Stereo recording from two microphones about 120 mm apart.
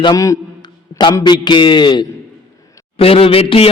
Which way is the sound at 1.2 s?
35° left (ahead or behind).